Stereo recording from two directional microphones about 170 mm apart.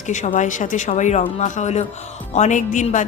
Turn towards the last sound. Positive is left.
turn(degrees=45)  # may be behind; listen again after turning